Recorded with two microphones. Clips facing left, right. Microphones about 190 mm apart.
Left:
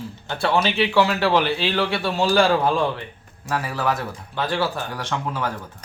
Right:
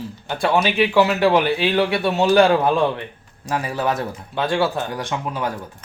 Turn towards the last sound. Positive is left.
turn(degrees=-15)  # may be behind; listen again after turning